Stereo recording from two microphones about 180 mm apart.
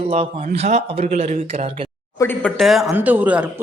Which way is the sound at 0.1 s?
30° right (ahead or behind).